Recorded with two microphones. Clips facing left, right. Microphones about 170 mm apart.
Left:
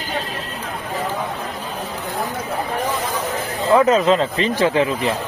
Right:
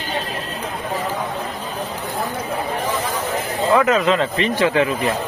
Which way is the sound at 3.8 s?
30° left (ahead or behind).